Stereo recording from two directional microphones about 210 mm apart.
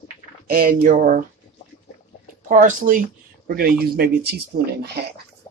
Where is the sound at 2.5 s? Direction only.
40° right (ahead or behind).